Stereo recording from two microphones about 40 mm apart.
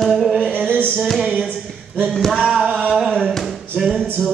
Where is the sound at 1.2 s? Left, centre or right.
Centre.